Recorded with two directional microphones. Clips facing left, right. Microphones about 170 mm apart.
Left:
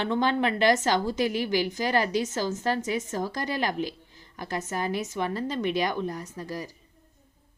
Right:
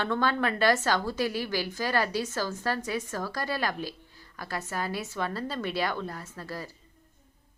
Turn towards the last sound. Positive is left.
turn(degrees=15)  # may be behind; listen again after turning